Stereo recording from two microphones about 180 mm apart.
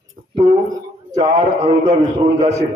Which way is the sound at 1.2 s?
35° right (ahead or behind).